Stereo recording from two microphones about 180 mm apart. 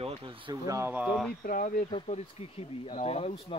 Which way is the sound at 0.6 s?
15° right (ahead or behind).